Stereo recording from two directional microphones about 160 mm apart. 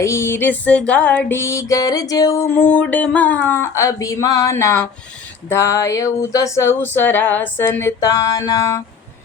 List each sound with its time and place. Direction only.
0.0 s music: 15° left (ahead or behind)